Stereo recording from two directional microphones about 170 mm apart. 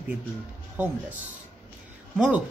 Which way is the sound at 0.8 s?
10° right (ahead or behind).